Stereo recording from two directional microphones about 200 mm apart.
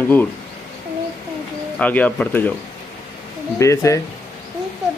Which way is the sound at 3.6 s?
15° left (ahead or behind).